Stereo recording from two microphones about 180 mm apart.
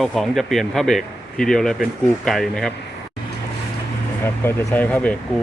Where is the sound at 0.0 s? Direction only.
Centre (ahead or behind).